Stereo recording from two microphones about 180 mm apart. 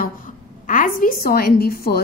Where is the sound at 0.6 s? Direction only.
50° left (ahead or behind).